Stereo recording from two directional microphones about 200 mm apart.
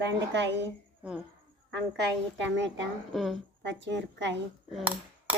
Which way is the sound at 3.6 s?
65° right (ahead or behind).